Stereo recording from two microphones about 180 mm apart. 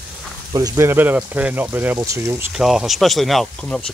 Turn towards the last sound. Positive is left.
turn(degrees=5)  # may be behind; listen again after turning